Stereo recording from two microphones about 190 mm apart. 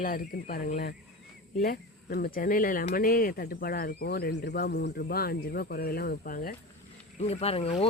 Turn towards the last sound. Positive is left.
turn(degrees=30)  # may be behind; listen again after turning